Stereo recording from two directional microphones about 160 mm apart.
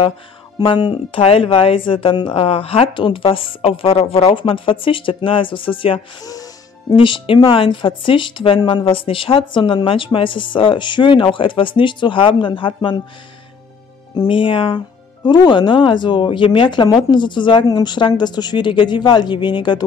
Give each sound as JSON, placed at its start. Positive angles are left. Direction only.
{"t": 0.6, "sound": "speech", "side_deg": 30}
{"t": 14.1, "sound": "speech", "side_deg": 30}